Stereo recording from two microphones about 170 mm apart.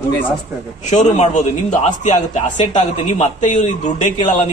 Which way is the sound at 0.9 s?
45° left (ahead or behind).